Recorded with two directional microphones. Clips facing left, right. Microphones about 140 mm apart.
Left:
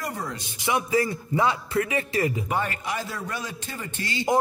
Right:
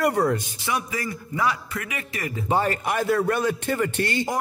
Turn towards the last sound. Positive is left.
turn(degrees=-65)  # may be behind; listen again after turning